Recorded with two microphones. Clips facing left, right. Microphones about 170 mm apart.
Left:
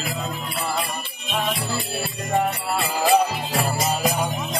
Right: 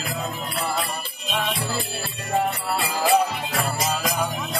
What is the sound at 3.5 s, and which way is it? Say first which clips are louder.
Jingle bell: left 2 dB; 30° left (ahead or behind).